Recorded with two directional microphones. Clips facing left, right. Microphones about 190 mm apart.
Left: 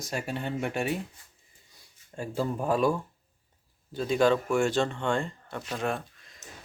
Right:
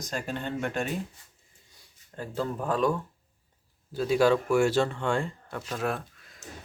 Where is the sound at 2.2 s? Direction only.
15° left (ahead or behind).